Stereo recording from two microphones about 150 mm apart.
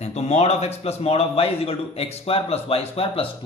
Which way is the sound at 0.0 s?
45° left (ahead or behind).